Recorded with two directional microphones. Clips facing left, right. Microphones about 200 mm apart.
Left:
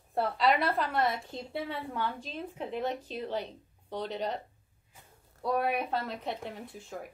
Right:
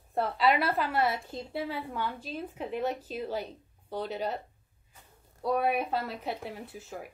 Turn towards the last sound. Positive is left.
turn(degrees=-5)  # may be behind; listen again after turning